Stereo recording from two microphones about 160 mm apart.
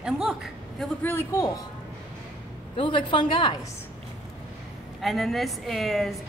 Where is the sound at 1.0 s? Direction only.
15° left (ahead or behind).